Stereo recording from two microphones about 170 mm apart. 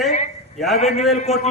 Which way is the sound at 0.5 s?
Centre (ahead or behind).